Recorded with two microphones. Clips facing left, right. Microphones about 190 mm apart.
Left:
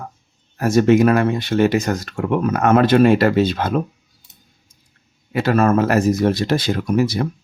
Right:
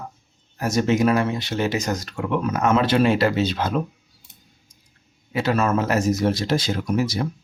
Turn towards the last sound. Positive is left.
turn(degrees=60)  # may be behind; listen again after turning